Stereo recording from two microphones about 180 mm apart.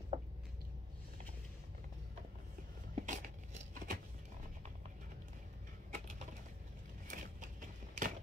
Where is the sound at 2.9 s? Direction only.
45° right (ahead or behind).